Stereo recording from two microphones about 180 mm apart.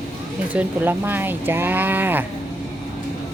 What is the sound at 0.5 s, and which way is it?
Speech, 10° right (ahead or behind).